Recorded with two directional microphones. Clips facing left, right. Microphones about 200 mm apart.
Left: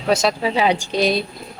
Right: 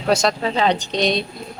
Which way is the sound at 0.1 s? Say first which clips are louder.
Even; 5° left (ahead or behind).